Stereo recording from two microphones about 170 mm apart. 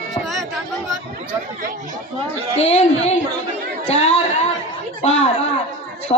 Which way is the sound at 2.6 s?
40° left (ahead or behind).